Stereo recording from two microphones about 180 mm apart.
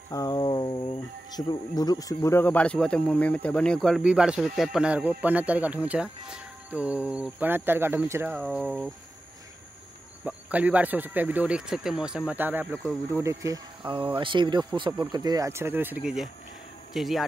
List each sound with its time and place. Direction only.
0.1 s speech: 20° left (ahead or behind); by 8.9 s 5° right (ahead or behind)
10.2 s speech: 10° right (ahead or behind)